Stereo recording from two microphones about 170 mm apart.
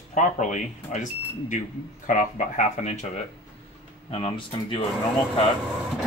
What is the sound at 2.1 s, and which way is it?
Speech, 50° left (ahead or behind).